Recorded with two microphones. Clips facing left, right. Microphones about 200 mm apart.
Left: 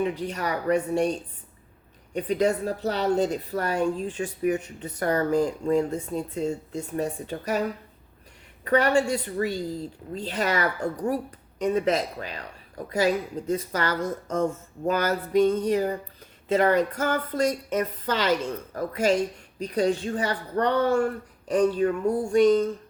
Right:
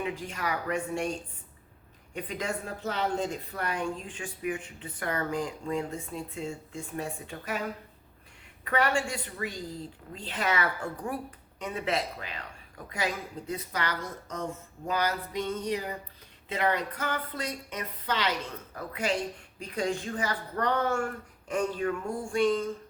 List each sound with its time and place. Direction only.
0.3 s a woman's voice: 35° left (ahead or behind)
2.1 s a woman's voice: 35° left (ahead or behind)
8.6 s a woman's voice: 40° left (ahead or behind)
14.8 s a sound: 50° left (ahead or behind)
16.5 s a woman's voice: 45° left (ahead or behind)